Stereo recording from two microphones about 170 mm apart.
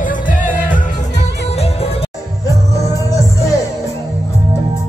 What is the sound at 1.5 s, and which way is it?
Music, 40° left (ahead or behind).